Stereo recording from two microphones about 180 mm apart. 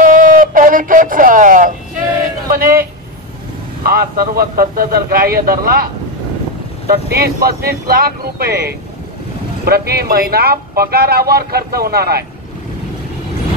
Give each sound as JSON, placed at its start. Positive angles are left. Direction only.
{"t": 0.0, "sound": "a sound", "side_deg": -50}
{"t": 3.8, "sound": "speech", "side_deg": -55}
{"t": 6.9, "sound": "speech", "side_deg": -60}